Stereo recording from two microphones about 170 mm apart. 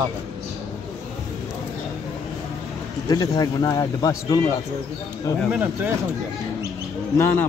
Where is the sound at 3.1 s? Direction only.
25° left (ahead or behind).